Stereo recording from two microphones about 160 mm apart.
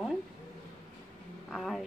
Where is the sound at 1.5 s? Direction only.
Centre (ahead or behind).